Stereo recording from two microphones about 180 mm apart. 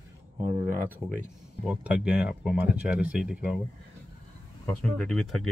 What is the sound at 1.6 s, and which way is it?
Speech, 5° right (ahead or behind).